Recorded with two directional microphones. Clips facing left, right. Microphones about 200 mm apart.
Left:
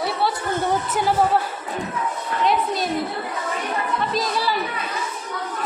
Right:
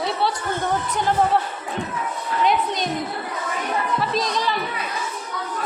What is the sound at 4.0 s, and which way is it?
Speech, centre (ahead or behind).